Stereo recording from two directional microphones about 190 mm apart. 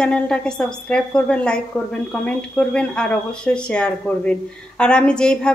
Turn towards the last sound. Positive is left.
turn(degrees=5)  # may be behind; listen again after turning